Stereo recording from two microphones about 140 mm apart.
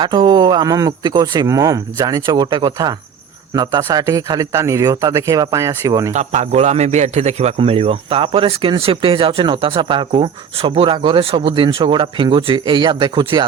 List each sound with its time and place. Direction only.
0.0 s speech: 35° right (ahead or behind)
6.1 s speech: 55° right (ahead or behind); by 13.4 s 35° right (ahead or behind)